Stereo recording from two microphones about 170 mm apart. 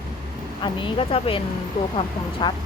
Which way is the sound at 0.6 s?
30° left (ahead or behind).